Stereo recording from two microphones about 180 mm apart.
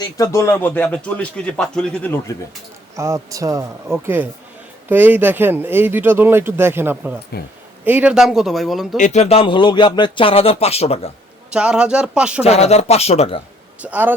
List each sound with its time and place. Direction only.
0.0 s a man's voice: 15° left (ahead or behind)
2.9 s speech: 15° right (ahead or behind); by 9.0 s centre (ahead or behind)
9.0 s speech: 40° left (ahead or behind)
11.5 s speech: 5° right (ahead or behind)
12.4 s speech: 35° left (ahead or behind)
13.8 s speech: 10° right (ahead or behind)